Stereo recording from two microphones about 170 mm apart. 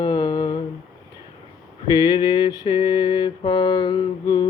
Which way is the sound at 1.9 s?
25° left (ahead or behind).